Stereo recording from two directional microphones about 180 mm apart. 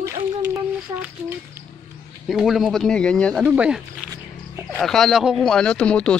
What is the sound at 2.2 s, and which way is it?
Speech, centre (ahead or behind).